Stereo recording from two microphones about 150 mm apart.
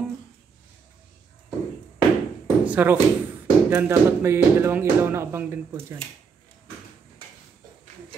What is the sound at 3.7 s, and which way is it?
Speech, 15° right (ahead or behind).